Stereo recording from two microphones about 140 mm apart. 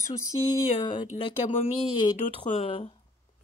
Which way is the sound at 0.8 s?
35° left (ahead or behind).